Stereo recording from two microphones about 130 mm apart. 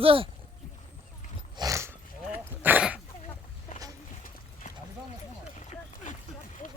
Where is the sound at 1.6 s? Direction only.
25° right (ahead or behind).